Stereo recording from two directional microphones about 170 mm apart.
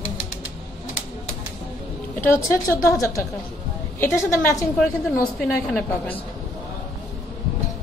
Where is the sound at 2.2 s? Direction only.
15° left (ahead or behind).